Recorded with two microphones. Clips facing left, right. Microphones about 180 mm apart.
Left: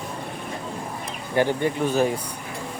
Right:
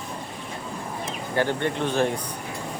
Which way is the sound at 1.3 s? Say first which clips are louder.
Left 3 dB; 15° left (ahead or behind).